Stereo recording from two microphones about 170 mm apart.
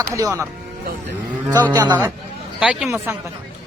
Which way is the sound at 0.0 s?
20° right (ahead or behind).